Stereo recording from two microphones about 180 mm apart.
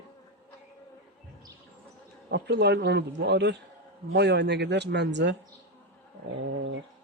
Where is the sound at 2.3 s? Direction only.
70° right (ahead or behind).